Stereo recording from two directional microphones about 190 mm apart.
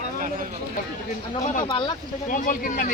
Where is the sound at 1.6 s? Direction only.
25° left (ahead or behind).